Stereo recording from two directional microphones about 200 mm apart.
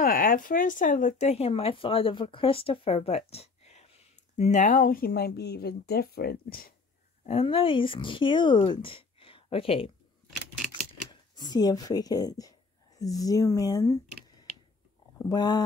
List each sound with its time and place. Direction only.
0.0 s speech: 45° left (ahead or behind)
7.2 s speech: 30° left (ahead or behind)
11.1 s speech: 20° left (ahead or behind)
15.2 s speech: 20° left (ahead or behind)